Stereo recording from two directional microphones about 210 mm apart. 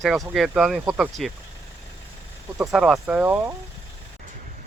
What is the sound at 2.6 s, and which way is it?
Speech, centre (ahead or behind).